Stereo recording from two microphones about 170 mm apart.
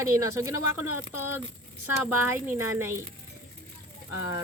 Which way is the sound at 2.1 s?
15° right (ahead or behind).